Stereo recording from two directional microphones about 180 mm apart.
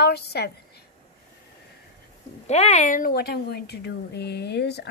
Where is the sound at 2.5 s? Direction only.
35° left (ahead or behind).